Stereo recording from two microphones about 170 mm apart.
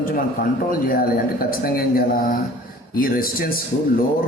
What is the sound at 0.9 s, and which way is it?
A man's voice, 60° left (ahead or behind).